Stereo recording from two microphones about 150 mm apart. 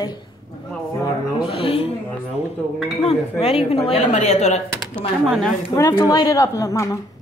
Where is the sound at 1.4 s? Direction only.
40° left (ahead or behind).